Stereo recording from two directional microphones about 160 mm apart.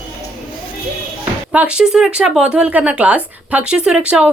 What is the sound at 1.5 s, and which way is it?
Speech, 5° right (ahead or behind).